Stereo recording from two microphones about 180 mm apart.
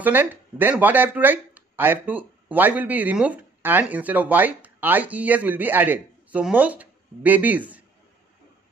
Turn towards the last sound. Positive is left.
turn(degrees=-10)  # may be behind; listen again after turning